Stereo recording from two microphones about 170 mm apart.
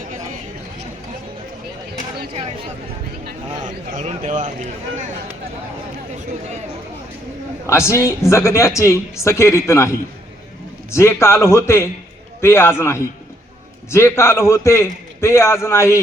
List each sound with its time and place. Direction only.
3.2 s a sound: 50° right (ahead or behind)
7.7 s speech: 15° left (ahead or behind)
10.9 s speech: 15° left (ahead or behind)